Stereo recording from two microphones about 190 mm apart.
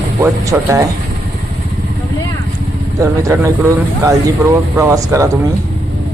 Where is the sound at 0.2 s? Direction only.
15° right (ahead or behind).